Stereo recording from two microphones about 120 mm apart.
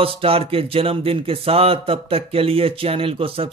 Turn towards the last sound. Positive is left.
turn(degrees=-50)  # may be behind; listen again after turning